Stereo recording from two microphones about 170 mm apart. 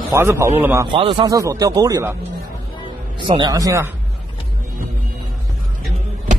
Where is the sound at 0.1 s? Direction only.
15° right (ahead or behind).